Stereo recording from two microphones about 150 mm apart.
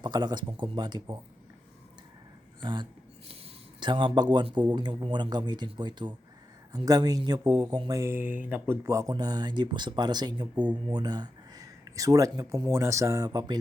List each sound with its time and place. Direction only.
0.0 s speech: 30° right (ahead or behind)
2.6 s speech: 30° right (ahead or behind)